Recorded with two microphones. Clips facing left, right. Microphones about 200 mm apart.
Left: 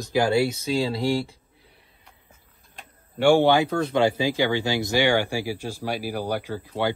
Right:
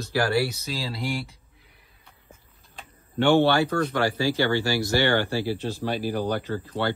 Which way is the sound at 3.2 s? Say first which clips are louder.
Left 2 dB; 10° left (ahead or behind).